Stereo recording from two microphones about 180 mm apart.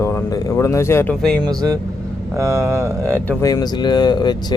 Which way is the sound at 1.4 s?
20° right (ahead or behind).